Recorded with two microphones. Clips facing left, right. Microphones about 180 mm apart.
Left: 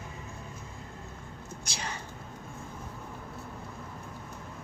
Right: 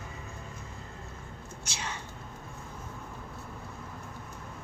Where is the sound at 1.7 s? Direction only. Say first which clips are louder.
Even; 35° left (ahead or behind).